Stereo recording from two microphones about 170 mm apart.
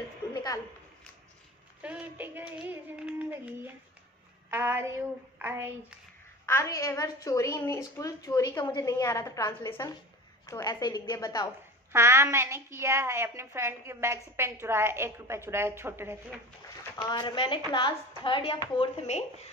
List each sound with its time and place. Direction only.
0.3 s a sound: 20° left (ahead or behind)
1.8 s a woman's voice: 10° right (ahead or behind)
6.4 s a woman's voice: 15° left (ahead or behind)
11.9 s a woman's voice: 15° right (ahead or behind)
16.6 s a woman's voice: 25° left (ahead or behind)